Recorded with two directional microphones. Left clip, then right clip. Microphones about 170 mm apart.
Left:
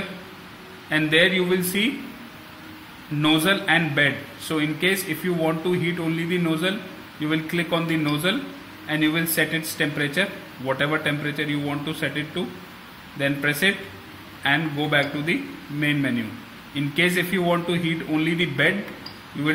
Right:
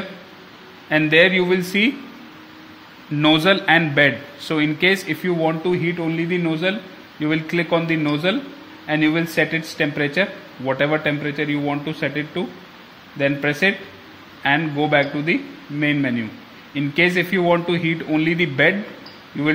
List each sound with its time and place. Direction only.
0.8 s speech: 40° right (ahead or behind)
3.2 s speech: 40° right (ahead or behind)